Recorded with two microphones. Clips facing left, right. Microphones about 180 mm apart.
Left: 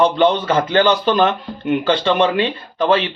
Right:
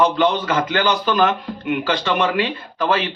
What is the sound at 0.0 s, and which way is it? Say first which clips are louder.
Speech: left 3 dB; 30° left (ahead or behind).